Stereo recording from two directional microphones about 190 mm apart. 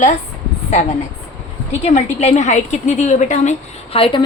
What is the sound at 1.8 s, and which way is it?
Speech, 35° left (ahead or behind).